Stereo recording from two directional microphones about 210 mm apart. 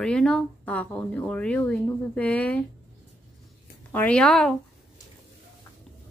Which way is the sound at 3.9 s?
5° left (ahead or behind).